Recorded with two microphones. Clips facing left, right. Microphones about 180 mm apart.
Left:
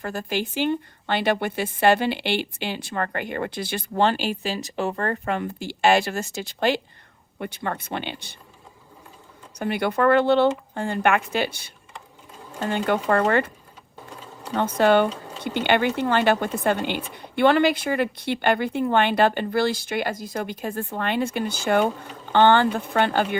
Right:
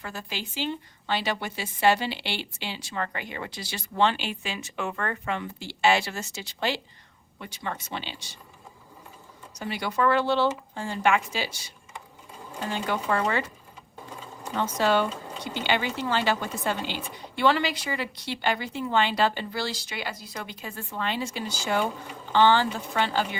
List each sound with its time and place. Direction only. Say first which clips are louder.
0.0 s a woman's voice: left 9 dB; 50° left (ahead or behind)
9.6 s a woman's voice: left 5 dB; 55° left (ahead or behind)
14.5 s a woman's voice: left 6 dB; 55° left (ahead or behind)